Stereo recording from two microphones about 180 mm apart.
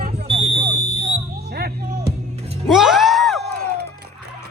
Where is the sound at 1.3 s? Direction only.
60° right (ahead or behind).